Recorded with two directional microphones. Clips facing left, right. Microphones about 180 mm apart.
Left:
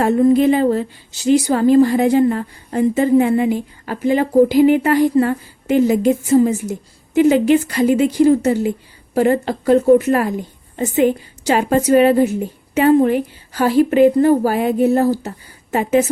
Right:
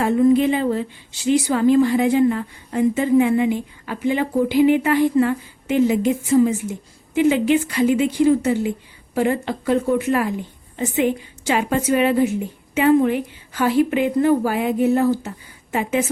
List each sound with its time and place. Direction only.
0.0 s a woman's voice: 40° left (ahead or behind)